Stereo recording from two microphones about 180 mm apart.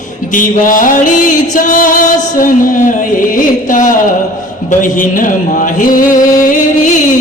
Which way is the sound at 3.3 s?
45° left (ahead or behind).